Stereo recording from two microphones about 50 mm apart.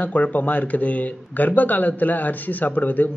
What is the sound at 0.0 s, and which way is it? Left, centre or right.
Speech, left.